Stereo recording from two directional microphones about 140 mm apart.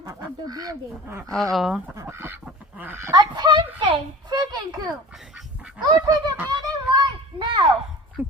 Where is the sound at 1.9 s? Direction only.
20° right (ahead or behind).